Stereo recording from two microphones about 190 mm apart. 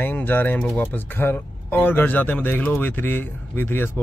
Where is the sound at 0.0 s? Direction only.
10° left (ahead or behind).